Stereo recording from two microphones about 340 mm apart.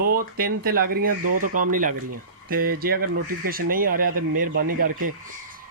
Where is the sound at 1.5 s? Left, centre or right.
Right.